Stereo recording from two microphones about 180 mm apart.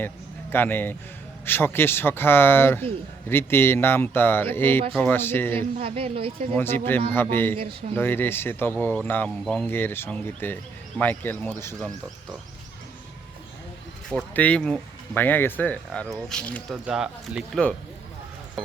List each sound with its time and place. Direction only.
0.5 s speech: 10° left (ahead or behind)
5.8 s speech: 30° right (ahead or behind)
6.5 s speech: 10° left (ahead or behind)
7.5 s speech: 30° right (ahead or behind)
7.9 s speech: 10° left (ahead or behind)
14.1 s speech: 5° left (ahead or behind)
16.7 s speech: 5° right (ahead or behind)